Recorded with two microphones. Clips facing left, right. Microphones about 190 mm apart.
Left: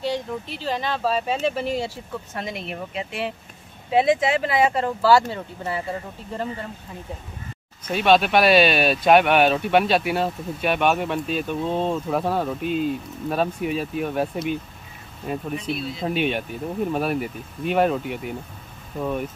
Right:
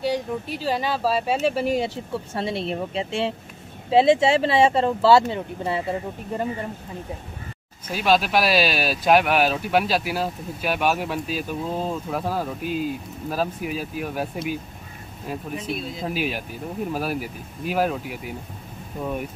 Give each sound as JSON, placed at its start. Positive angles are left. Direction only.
{"t": 0.0, "sound": "speech", "side_deg": -10}
{"t": 2.3, "sound": "speech", "side_deg": -30}
{"t": 7.9, "sound": "speech", "side_deg": 0}